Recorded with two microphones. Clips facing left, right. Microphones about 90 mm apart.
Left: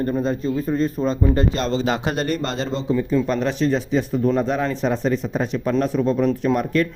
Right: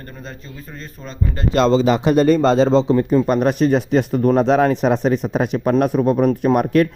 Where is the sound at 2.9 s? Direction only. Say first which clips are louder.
Right 4 dB; 50° right (ahead or behind).